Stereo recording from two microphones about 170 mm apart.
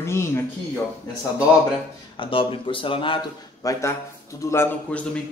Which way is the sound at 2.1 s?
30° left (ahead or behind).